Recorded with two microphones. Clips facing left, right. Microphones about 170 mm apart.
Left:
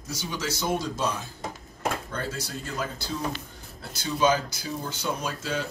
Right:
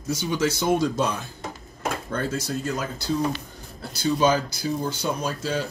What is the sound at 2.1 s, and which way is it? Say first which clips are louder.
Speech: right 6 dB; 45° right (ahead or behind).